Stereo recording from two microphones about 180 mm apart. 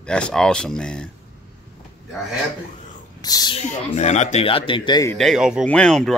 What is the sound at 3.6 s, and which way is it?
Speech, 40° left (ahead or behind).